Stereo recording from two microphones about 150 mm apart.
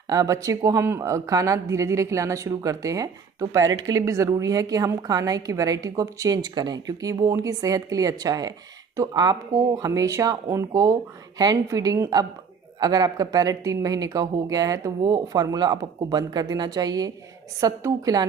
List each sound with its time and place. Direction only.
0.1 s speech: 20° right (ahead or behind)